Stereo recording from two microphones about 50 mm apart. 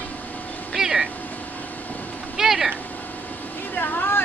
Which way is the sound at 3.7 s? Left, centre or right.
Left.